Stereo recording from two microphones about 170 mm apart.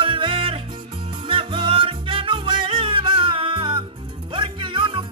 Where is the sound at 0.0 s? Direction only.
30° right (ahead or behind).